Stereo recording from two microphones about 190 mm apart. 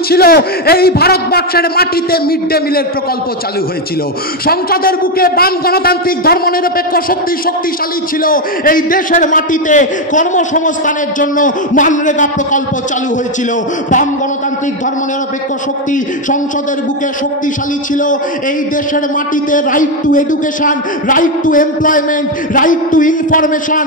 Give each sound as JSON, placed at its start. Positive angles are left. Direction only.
{"t": 0.1, "sound": "a man's voice", "side_deg": 55}
{"t": 4.5, "sound": "a man's voice", "side_deg": 50}
{"t": 8.2, "sound": "a man's voice", "side_deg": 45}
{"t": 19.5, "sound": "a man's voice", "side_deg": 45}